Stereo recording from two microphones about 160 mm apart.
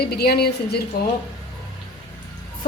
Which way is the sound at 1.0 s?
70° left (ahead or behind).